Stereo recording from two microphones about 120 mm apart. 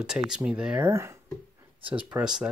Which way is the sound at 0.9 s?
20° right (ahead or behind).